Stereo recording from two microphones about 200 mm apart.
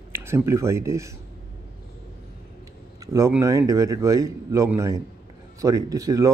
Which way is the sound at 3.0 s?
15° right (ahead or behind).